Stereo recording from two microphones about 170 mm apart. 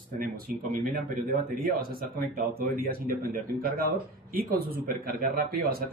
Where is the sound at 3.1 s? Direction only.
55° right (ahead or behind).